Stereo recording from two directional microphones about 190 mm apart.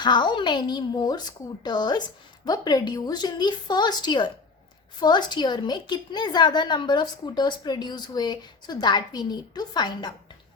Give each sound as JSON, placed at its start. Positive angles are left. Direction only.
{"t": 0.0, "sound": "a woman's voice", "side_deg": 25}